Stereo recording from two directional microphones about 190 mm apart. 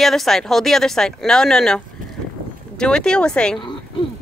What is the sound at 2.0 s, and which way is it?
Vehicle, 45° right (ahead or behind).